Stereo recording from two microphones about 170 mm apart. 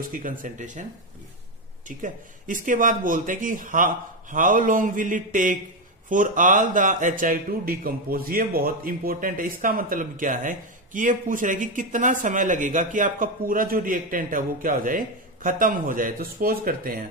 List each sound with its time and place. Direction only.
0.1 s speech: 50° right (ahead or behind)
1.9 s speech: 50° right (ahead or behind)